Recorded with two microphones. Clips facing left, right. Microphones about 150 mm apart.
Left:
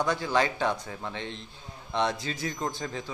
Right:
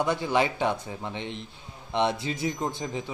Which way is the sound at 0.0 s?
20° right (ahead or behind).